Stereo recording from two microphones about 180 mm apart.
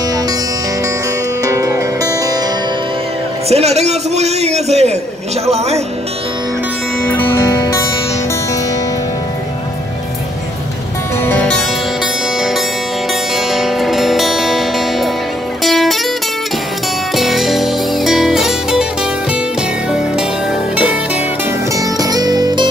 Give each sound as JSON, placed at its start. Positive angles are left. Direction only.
{"t": 1.4, "sound": "music", "side_deg": -15}
{"t": 3.4, "sound": "a man's voice", "side_deg": -35}
{"t": 7.1, "sound": "guitar", "side_deg": 10}
{"t": 11.2, "sound": "music", "side_deg": 5}
{"t": 17.1, "sound": "music", "side_deg": 0}
{"t": 20.7, "sound": "music", "side_deg": -5}
{"t": 21.7, "sound": "music", "side_deg": -20}